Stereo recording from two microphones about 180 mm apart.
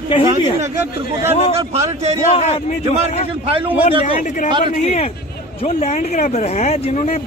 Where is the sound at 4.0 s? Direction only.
45° left (ahead or behind).